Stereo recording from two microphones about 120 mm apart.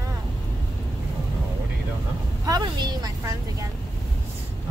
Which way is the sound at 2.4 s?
35° right (ahead or behind).